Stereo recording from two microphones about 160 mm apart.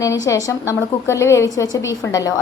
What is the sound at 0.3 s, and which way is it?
A woman's voice, 20° left (ahead or behind).